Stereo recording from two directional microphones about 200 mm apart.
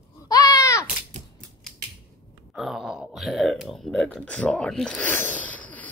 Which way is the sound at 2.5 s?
Centre (ahead or behind).